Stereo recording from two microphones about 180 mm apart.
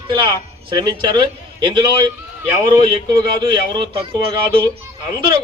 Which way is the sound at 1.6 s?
25° right (ahead or behind).